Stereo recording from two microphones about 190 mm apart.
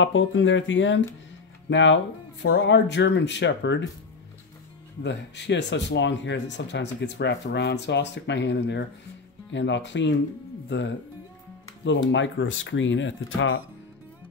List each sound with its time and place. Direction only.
0.0 s speech: 85° left; by 3.9 s 70° left (ahead or behind)
5.0 s speech: 65° left (ahead or behind); by 13.6 s 85° left